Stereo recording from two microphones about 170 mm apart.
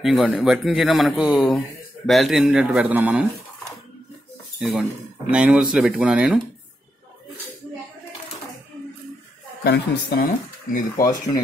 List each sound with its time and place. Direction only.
0.0 s speech: centre (ahead or behind)
4.6 s cutlery: centre (ahead or behind)
5.3 s speech: 5° right (ahead or behind)
9.6 s a woman's voice: 70° left (ahead or behind)
10.7 s speech: 55° left (ahead or behind)